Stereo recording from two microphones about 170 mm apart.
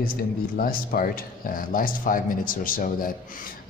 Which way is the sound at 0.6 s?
60° left (ahead or behind).